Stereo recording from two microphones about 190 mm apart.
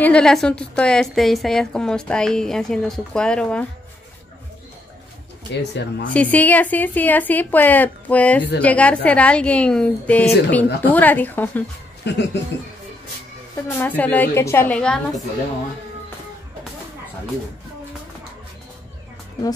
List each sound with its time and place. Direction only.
0.0 s a woman's voice: 5° left (ahead or behind)
5.6 s speech: 65° left (ahead or behind)
6.0 s a woman's voice: 10° left (ahead or behind)
12.1 s speech: 60° left (ahead or behind)
13.6 s a woman's voice: 10° left (ahead or behind)